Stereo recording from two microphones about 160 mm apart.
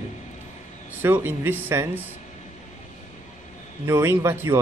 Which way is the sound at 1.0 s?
15° right (ahead or behind).